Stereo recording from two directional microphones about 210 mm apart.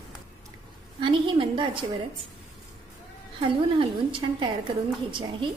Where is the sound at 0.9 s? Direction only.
25° right (ahead or behind).